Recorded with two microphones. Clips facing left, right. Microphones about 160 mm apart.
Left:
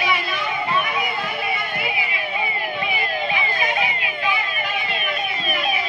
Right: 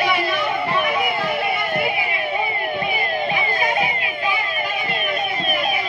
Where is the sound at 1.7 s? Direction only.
45° right (ahead or behind).